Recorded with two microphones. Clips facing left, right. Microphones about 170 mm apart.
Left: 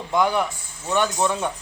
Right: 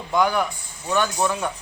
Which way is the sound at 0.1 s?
25° left (ahead or behind).